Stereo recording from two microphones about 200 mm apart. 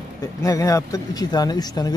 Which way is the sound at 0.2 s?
15° left (ahead or behind).